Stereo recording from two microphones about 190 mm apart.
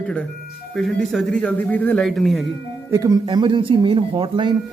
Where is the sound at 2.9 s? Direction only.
20° right (ahead or behind).